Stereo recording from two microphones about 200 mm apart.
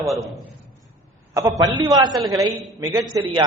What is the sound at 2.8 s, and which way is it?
Speech, 20° right (ahead or behind).